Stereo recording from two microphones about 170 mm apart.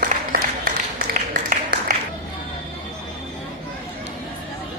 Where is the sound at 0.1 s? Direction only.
60° right (ahead or behind).